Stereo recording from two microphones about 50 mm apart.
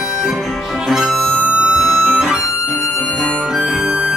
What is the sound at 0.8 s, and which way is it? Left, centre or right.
Music, centre.